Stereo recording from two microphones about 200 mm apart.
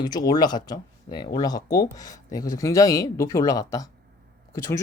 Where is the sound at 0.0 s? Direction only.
20° left (ahead or behind).